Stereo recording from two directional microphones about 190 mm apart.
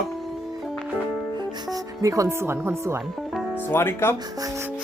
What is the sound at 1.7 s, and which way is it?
Speech, 15° right (ahead or behind).